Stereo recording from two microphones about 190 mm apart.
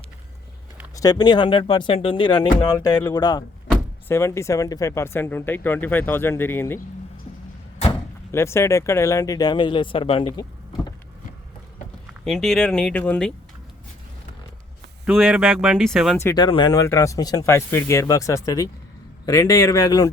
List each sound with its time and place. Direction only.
0.9 s speech: 20° left (ahead or behind)
8.3 s speech: 15° left (ahead or behind)
12.2 s speech: centre (ahead or behind)
15.0 s speech: centre (ahead or behind)
16.1 s speech: 20° left (ahead or behind)